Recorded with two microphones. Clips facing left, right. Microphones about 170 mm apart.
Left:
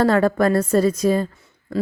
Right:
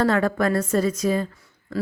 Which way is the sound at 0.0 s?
35° left (ahead or behind).